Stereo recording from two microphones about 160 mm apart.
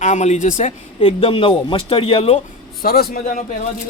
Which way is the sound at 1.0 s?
35° left (ahead or behind).